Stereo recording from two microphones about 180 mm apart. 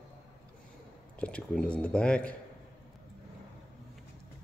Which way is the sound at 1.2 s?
5° left (ahead or behind).